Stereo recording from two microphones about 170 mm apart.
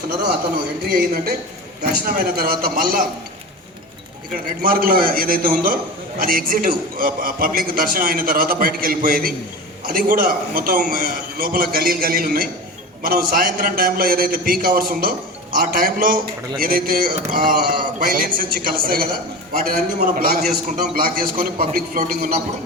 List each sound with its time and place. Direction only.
0.9 s a man's voice: 60° right (ahead or behind)
4.6 s a man's voice: 60° right (ahead or behind)